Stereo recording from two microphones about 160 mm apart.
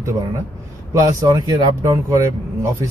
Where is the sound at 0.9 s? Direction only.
20° right (ahead or behind).